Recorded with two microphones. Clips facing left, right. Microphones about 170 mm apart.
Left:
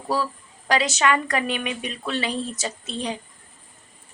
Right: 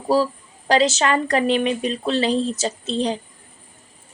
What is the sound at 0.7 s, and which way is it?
Speech, 30° right (ahead or behind).